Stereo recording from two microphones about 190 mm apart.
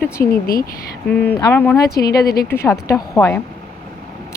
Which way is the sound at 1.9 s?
55° left (ahead or behind).